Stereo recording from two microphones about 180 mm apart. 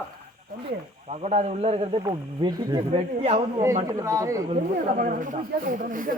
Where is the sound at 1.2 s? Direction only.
40° right (ahead or behind).